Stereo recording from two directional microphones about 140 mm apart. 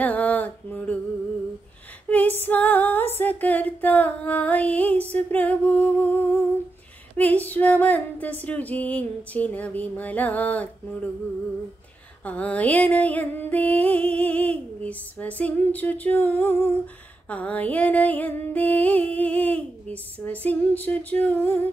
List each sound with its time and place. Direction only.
0.0 s a sound: 10° left (ahead or behind)
2.0 s music: 10° left (ahead or behind)
12.3 s music: 10° left (ahead or behind)